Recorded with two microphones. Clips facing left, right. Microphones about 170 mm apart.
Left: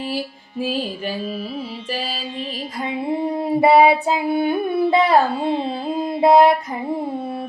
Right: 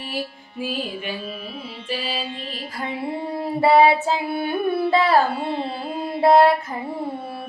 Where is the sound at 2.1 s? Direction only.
55° right (ahead or behind).